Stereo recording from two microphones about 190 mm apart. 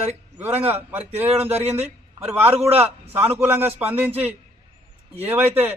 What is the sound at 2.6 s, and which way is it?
Speech, 30° right (ahead or behind).